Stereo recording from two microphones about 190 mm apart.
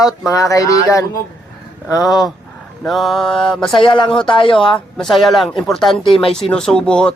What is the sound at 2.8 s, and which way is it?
Speech, centre (ahead or behind).